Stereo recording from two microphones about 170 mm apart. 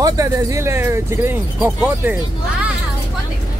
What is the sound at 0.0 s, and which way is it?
Speech, 20° right (ahead or behind).